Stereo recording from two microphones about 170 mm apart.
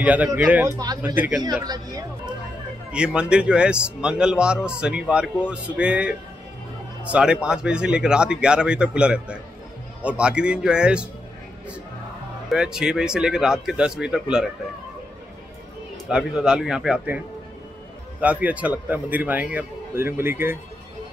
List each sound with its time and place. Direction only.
0.0 s speech: 10° right (ahead or behind)
1.4 s a man's voice: 20° right (ahead or behind)
2.9 s speech: 5° right (ahead or behind)
12.4 s speech: 5° right (ahead or behind)
16.1 s speech: 5° right (ahead or behind)
18.2 s speech: 10° right (ahead or behind)